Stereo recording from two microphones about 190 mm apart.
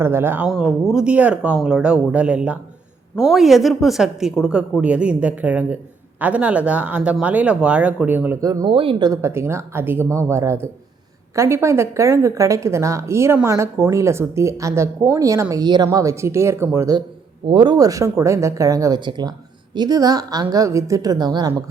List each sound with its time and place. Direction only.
0.0 s a woman's voice: 10° right (ahead or behind)
0.4 s a woman's voice: centre (ahead or behind); by 21.5 s 20° right (ahead or behind)